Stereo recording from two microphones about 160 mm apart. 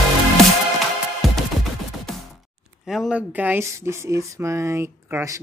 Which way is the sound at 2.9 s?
5° right (ahead or behind).